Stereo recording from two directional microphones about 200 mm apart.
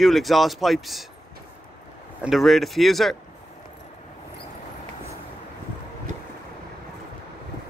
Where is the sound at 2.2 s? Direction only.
Centre (ahead or behind).